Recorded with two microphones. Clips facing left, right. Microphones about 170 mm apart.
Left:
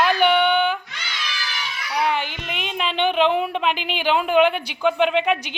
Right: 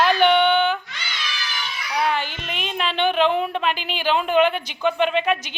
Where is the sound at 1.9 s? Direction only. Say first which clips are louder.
Even; 15° left (ahead or behind).